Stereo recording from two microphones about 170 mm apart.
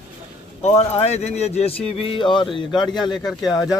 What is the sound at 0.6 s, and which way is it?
Speech, 40° left (ahead or behind).